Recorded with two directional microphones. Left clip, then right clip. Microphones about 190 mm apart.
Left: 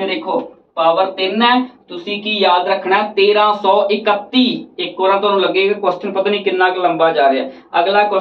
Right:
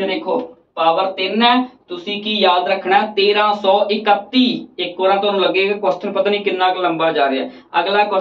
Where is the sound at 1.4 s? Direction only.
20° right (ahead or behind).